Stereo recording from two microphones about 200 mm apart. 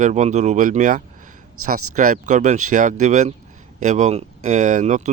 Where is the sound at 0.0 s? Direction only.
35° right (ahead or behind).